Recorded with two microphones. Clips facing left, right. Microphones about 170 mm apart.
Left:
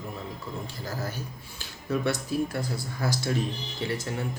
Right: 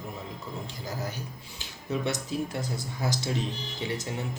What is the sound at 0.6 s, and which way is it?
Speech, 15° right (ahead or behind).